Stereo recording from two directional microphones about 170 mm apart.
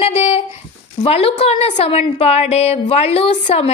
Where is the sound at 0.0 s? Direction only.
35° left (ahead or behind).